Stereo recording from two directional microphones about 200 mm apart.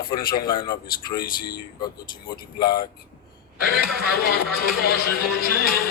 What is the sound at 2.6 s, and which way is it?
Speech, 20° left (ahead or behind).